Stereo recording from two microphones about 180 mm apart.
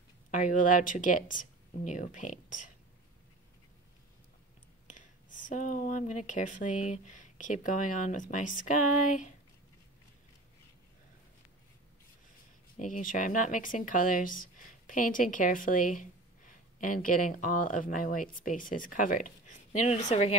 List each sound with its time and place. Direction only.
0.3 s speech: 45° left (ahead or behind)
4.8 s speech: 45° left (ahead or behind)
12.7 s speech: 45° left (ahead or behind)